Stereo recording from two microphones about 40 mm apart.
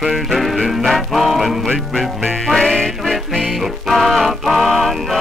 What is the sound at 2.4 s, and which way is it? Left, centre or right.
Music, centre.